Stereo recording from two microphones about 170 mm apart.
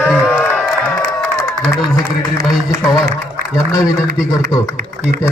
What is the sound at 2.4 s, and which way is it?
Speech, 20° left (ahead or behind).